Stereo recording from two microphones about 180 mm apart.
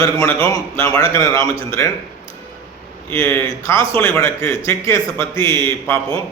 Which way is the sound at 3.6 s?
15° left (ahead or behind).